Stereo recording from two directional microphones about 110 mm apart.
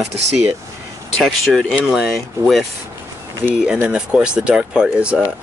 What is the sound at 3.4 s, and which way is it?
Speech, 25° left (ahead or behind).